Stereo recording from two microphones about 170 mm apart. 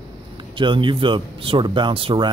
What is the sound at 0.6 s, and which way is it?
Speech, 30° right (ahead or behind).